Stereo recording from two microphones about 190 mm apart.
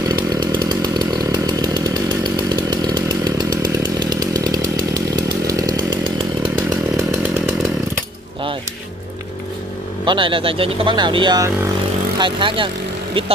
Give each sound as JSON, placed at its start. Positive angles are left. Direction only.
{"t": 0.1, "sound": "chainsaw", "side_deg": -25}
{"t": 10.0, "sound": "speech", "side_deg": -25}